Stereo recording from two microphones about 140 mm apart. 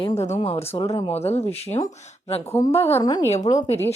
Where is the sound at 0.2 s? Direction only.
55° left (ahead or behind).